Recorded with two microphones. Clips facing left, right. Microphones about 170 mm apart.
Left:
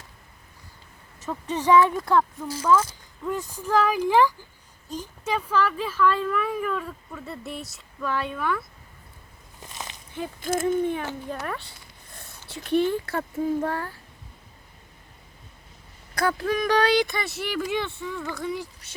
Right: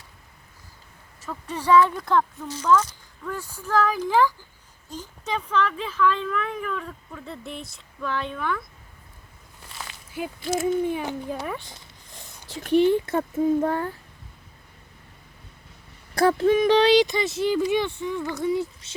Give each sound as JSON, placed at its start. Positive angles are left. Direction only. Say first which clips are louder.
{"t": 1.2, "sound": "speech", "louder": "left 3 dB", "side_deg": 20}
{"t": 10.1, "sound": "speech", "louder": "right 2 dB", "side_deg": -10}
{"t": 10.4, "sound": "speech", "louder": "even", "side_deg": 50}
{"t": 10.8, "sound": "speech", "louder": "right 1 dB", "side_deg": -10}
{"t": 16.1, "sound": "speech", "louder": "right 6 dB", "side_deg": -25}